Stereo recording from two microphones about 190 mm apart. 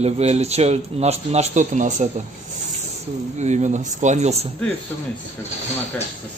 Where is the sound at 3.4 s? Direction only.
35° right (ahead or behind).